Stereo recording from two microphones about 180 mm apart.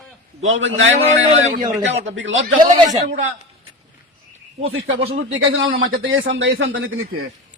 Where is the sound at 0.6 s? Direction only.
90° right.